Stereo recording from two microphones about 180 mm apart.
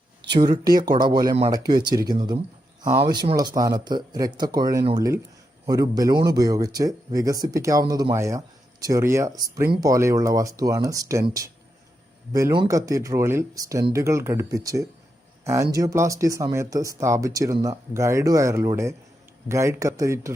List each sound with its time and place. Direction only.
0.3 s speech: 25° right (ahead or behind)